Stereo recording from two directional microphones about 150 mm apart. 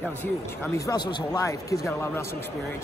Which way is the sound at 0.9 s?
20° left (ahead or behind).